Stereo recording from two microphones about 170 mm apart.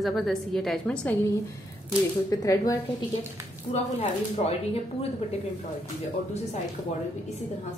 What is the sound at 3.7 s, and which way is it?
Speech, 35° left (ahead or behind).